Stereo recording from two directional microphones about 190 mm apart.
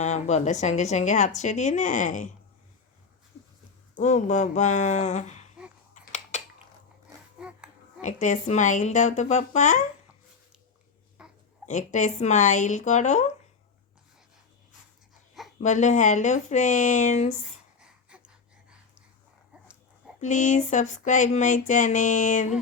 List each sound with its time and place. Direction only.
0.0 s music: 35° left (ahead or behind)
3.9 s music: 40° left (ahead or behind)
5.9 s a sound: 40° left (ahead or behind)
7.3 s a sound: 5° right (ahead or behind)
8.0 s music: 40° left (ahead or behind)
11.2 s babbling: 5° right (ahead or behind)
11.6 s music: 40° left (ahead or behind)
15.6 s music: 40° left (ahead or behind)
17.7 s a sound: 5° right (ahead or behind)
20.2 s music: 40° left (ahead or behind)